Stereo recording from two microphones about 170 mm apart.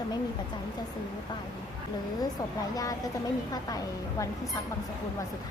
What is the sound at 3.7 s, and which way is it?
Speech, 20° left (ahead or behind).